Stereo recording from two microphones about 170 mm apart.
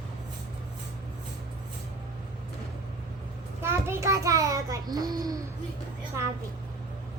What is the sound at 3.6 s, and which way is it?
Child singing, 15° right (ahead or behind).